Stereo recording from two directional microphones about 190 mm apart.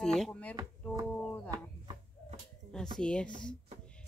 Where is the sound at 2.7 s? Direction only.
5° left (ahead or behind).